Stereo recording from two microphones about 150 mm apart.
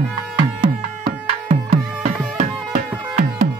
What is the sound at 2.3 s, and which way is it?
Music, 50° right (ahead or behind).